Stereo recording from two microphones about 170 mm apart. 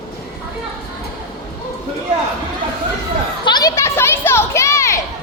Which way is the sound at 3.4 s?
25° left (ahead or behind).